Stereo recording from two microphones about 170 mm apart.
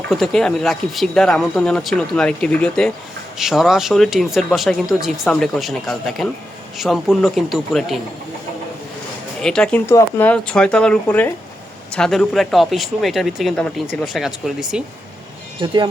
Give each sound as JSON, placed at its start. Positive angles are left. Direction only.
{"t": 0.1, "sound": "speech", "side_deg": 0}
{"t": 9.4, "sound": "speech", "side_deg": 5}
{"t": 15.5, "sound": "speech", "side_deg": -30}